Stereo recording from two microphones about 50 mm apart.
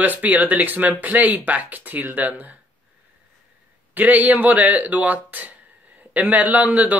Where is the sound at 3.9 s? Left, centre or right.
Right.